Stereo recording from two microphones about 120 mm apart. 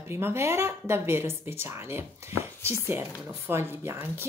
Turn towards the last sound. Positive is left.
turn(degrees=-20)  # may be behind; listen again after turning